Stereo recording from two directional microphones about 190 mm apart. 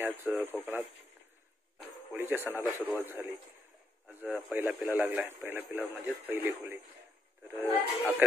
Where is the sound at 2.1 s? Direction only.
10° right (ahead or behind).